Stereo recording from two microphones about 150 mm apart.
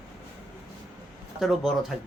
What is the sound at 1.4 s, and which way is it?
Speech, centre (ahead or behind).